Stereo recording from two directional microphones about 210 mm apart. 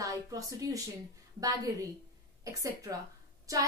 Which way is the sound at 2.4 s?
15° right (ahead or behind).